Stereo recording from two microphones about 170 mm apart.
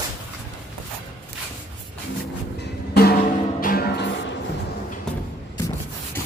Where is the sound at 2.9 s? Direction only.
65° left (ahead or behind).